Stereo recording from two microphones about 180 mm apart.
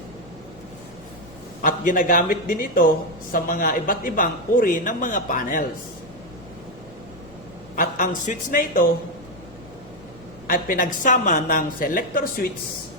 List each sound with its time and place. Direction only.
1.6 s a man's voice: 50° left (ahead or behind)
7.8 s a man's voice: 50° left (ahead or behind)
10.4 s a man's voice: 50° left (ahead or behind)